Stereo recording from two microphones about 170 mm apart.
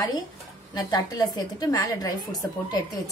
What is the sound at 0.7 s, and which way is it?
A woman's voice, 20° left (ahead or behind).